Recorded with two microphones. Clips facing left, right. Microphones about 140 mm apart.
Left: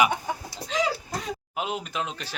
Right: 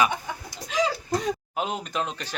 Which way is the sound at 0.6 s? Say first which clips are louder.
Left 2 dB; 30° left (ahead or behind).